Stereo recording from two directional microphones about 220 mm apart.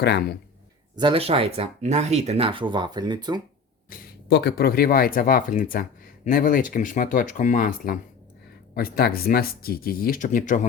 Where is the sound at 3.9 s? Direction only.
50° left (ahead or behind).